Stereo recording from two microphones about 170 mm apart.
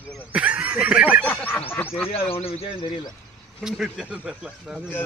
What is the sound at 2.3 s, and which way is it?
Speech, 35° left (ahead or behind).